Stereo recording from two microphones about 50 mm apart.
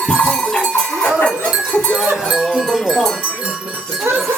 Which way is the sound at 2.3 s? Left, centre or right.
Centre.